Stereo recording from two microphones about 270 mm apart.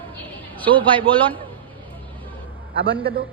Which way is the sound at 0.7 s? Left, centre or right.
Centre.